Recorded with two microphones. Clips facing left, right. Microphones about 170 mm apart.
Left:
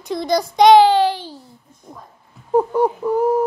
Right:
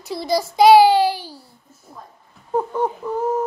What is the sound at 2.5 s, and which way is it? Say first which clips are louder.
Speech: left 5 dB; 10° left (ahead or behind).